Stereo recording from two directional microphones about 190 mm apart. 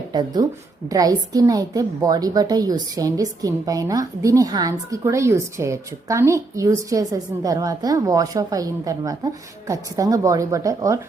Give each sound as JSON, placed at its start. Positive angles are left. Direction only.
{"t": 0.1, "sound": "a woman's voice", "side_deg": -20}